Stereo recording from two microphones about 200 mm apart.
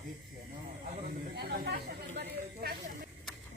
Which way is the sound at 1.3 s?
55° right (ahead or behind).